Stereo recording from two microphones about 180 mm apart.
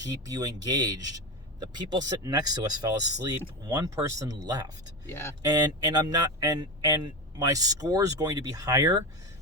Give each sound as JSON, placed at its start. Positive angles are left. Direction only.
{"t": 0.0, "sound": "speech", "side_deg": -20}
{"t": 5.0, "sound": "speech", "side_deg": 10}
{"t": 5.4, "sound": "speech", "side_deg": -20}